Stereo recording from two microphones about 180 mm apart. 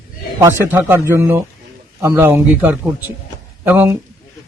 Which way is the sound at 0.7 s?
10° right (ahead or behind).